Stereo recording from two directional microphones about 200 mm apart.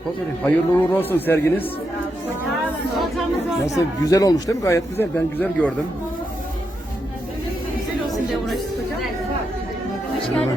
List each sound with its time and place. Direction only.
0.4 s a man's voice: 10° left (ahead or behind)
3.8 s a man's voice: 15° left (ahead or behind)